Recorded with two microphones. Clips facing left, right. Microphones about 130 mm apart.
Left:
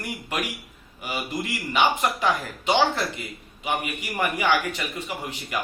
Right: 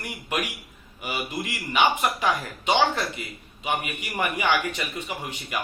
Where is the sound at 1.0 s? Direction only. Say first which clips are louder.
Left 1 dB; 15° right (ahead or behind).